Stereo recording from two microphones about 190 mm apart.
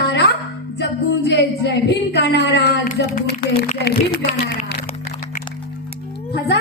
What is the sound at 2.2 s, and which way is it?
Speech, 60° left (ahead or behind).